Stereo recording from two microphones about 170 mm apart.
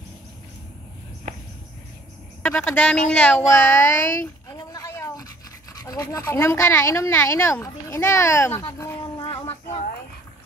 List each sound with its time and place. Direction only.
2.4 s speech: 5° left (ahead or behind)
4.5 s a sound: 20° left (ahead or behind)
5.9 s speech: 20° left (ahead or behind)